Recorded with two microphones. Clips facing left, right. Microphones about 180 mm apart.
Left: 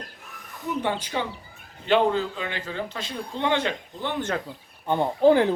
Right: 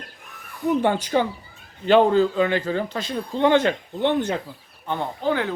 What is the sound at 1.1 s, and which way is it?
Speech, 50° right (ahead or behind).